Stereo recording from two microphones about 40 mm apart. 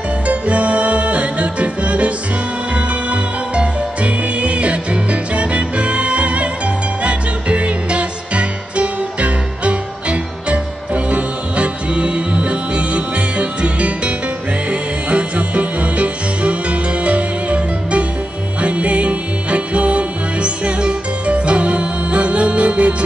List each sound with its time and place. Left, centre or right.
0.3 s music: right